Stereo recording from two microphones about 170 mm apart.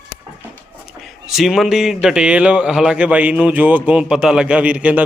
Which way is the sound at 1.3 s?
Centre (ahead or behind).